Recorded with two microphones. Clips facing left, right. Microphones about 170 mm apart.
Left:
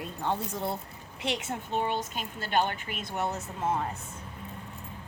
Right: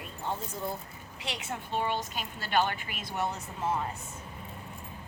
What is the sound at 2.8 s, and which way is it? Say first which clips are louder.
Speech: left 1 dB; 45° left (ahead or behind).